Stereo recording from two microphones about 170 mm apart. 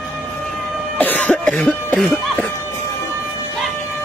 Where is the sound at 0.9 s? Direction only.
10° left (ahead or behind).